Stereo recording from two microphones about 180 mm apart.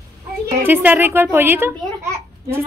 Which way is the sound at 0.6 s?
10° right (ahead or behind).